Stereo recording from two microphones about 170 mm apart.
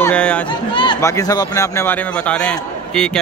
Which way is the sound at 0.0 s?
5° left (ahead or behind).